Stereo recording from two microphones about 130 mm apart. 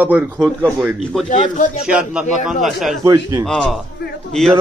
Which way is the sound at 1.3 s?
70° left (ahead or behind).